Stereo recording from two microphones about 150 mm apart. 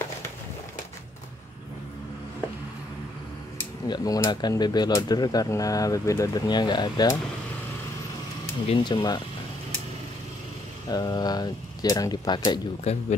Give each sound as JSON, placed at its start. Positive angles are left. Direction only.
{"t": 3.8, "sound": "speech", "side_deg": 25}
{"t": 8.6, "sound": "speech", "side_deg": 35}
{"t": 10.9, "sound": "speech", "side_deg": 25}
{"t": 12.9, "sound": "speech", "side_deg": 45}